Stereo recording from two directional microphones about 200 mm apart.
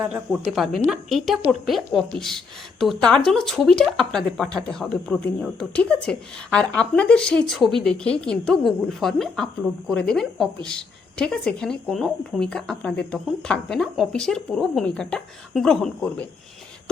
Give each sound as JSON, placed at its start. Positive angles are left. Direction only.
{"t": 0.0, "sound": "a woman's voice", "side_deg": -5}